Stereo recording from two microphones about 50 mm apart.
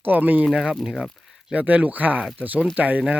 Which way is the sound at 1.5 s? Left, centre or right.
Right.